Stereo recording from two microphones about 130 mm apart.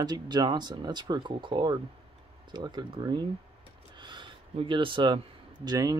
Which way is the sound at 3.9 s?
35° right (ahead or behind).